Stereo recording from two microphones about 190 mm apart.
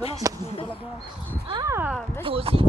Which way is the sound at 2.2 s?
30° right (ahead or behind).